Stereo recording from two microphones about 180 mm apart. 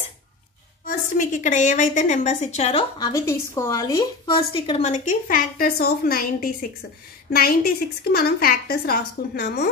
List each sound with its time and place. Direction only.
0.8 s a woman's voice: 45° left (ahead or behind)
3.0 s a woman's voice: 20° left (ahead or behind); by 9.7 s 55° left (ahead or behind)